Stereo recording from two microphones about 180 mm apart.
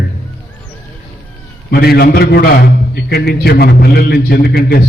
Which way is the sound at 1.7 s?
60° left (ahead or behind).